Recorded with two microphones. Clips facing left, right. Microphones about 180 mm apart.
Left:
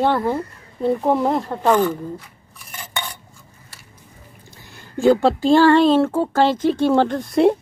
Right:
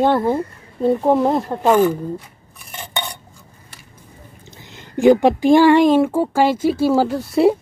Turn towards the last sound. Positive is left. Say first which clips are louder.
# right 1 dB
turn(degrees=-5)  # may be behind; listen again after turning